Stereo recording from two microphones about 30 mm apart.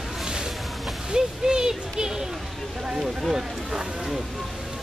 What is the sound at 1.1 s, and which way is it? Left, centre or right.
Speech, right.